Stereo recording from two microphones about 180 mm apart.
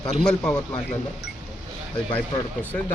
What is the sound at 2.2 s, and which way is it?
Speech, 10° left (ahead or behind).